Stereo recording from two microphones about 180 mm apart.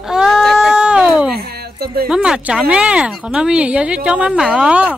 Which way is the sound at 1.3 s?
60° right (ahead or behind).